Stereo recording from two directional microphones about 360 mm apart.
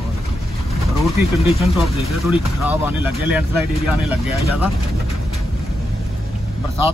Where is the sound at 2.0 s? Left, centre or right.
Left.